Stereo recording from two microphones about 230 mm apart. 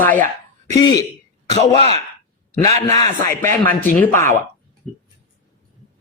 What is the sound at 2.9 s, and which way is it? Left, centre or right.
Speech, centre.